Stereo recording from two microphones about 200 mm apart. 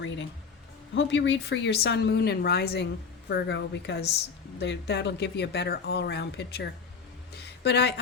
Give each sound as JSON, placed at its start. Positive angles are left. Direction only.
{"t": 0.9, "sound": "speech", "side_deg": 65}